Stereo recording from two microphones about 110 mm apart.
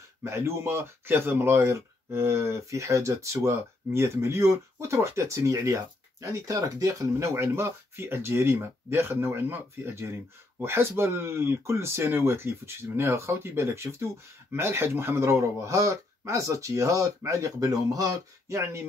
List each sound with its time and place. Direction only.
0.2 s speech: 25° right (ahead or behind)